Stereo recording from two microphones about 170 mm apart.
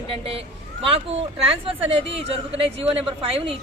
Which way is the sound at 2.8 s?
35° right (ahead or behind).